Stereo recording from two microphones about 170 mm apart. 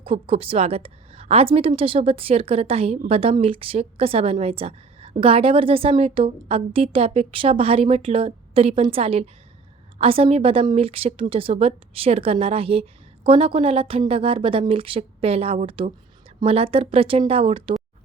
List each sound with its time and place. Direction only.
0.0 s a woman's voice: 35° right (ahead or behind)